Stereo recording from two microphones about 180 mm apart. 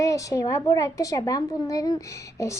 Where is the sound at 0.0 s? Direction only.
20° left (ahead or behind).